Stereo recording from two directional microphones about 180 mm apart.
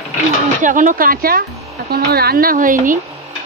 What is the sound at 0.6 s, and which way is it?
Speech, 45° right (ahead or behind).